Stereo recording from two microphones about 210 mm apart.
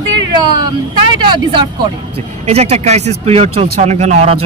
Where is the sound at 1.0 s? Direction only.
20° right (ahead or behind).